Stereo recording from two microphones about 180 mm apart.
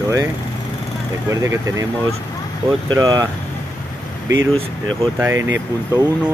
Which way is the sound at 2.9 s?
20° right (ahead or behind).